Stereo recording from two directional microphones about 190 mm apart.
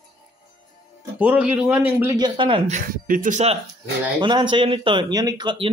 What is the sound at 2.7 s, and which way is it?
Speech, 45° right (ahead or behind).